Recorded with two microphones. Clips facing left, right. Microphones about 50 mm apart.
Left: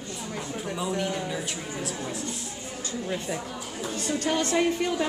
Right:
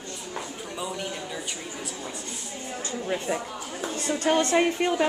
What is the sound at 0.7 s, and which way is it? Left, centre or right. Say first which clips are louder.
Speech: left 3 dB; centre.